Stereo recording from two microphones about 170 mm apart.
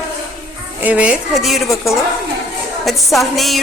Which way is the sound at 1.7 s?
15° left (ahead or behind).